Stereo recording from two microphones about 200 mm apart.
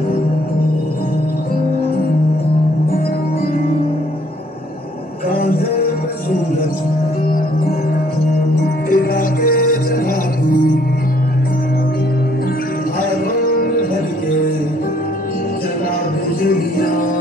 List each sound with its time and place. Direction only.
8.9 s music: 45° left (ahead or behind)
16.4 s music: 45° left (ahead or behind)